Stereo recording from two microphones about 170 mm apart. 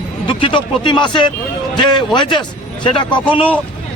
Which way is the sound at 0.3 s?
30° left (ahead or behind).